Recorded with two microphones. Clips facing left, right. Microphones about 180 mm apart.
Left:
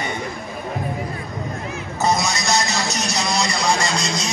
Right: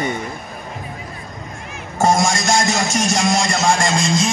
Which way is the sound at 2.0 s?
45° right (ahead or behind).